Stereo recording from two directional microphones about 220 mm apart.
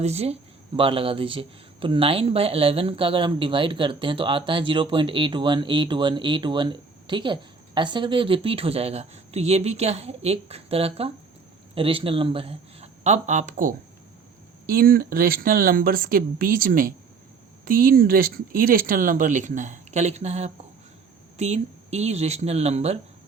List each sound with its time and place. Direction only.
0.0 s speech: 30° right (ahead or behind)